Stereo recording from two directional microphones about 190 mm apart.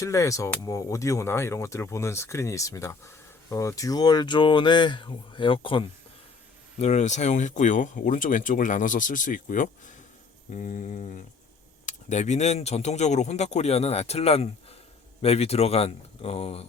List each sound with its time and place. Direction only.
0.0 s speech: 15° left (ahead or behind); by 16.6 s 30° left (ahead or behind)